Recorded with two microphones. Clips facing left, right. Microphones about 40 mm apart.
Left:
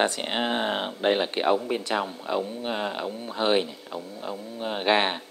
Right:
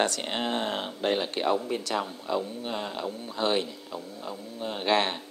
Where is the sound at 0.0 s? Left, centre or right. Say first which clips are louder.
Left 3 dB; centre.